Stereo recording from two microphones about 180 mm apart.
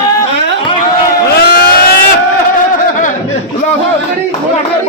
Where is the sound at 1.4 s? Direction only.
65° left (ahead or behind).